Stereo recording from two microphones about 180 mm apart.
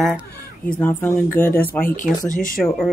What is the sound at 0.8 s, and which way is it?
Speech, 10° left (ahead or behind).